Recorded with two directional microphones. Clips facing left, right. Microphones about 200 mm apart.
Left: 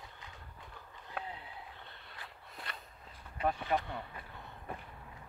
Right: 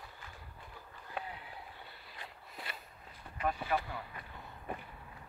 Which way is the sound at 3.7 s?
30° left (ahead or behind).